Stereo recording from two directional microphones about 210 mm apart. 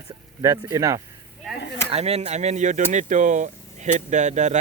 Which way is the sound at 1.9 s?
30° right (ahead or behind).